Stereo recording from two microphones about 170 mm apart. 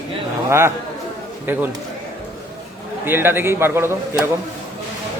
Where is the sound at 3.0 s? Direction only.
10° right (ahead or behind).